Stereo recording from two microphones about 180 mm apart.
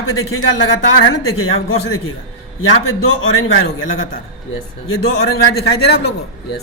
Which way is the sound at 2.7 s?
90° left.